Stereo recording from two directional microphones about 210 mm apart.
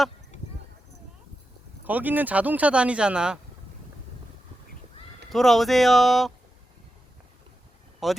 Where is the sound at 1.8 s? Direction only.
10° right (ahead or behind).